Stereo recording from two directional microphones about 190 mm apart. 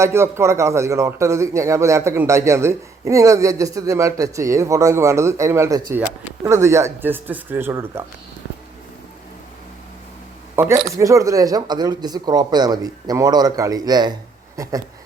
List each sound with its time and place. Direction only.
0.0 s a man's voice: 15° right (ahead or behind)
10.5 s speech: 15° right (ahead or behind)